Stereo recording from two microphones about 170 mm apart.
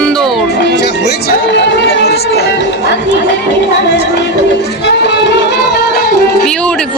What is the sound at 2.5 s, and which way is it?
Speech, 80° left.